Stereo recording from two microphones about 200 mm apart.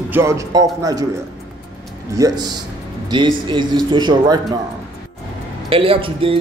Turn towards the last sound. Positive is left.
turn(degrees=-25)  # may be behind; listen again after turning